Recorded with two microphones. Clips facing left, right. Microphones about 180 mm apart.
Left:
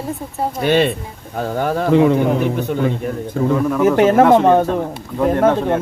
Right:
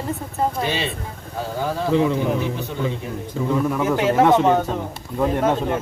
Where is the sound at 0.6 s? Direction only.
60° left (ahead or behind).